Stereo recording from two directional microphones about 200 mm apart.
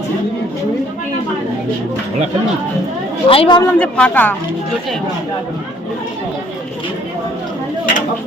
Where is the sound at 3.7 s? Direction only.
5° left (ahead or behind).